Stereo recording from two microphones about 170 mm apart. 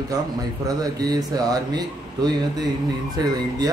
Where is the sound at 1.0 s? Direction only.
20° right (ahead or behind).